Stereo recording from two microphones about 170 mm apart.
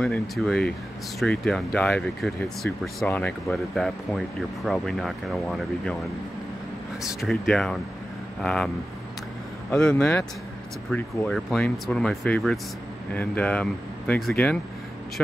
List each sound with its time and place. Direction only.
0.0 s speech: centre (ahead or behind)
7.0 s speech: centre (ahead or behind)
9.7 s speech: 5° left (ahead or behind)